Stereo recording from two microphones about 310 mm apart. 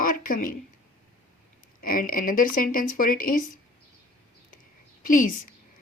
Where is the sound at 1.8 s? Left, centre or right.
Left.